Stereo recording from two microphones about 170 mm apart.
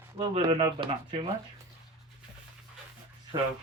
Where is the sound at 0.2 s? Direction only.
30° right (ahead or behind).